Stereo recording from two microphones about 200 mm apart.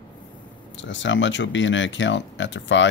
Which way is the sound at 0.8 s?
65° left (ahead or behind).